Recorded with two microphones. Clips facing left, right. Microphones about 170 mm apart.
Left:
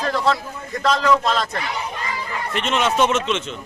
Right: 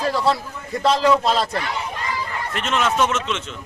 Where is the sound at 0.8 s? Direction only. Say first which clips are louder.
Right 1 dB; 30° right (ahead or behind).